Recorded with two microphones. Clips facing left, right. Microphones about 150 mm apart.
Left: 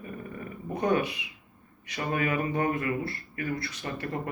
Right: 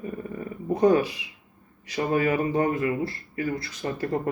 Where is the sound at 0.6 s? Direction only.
30° right (ahead or behind).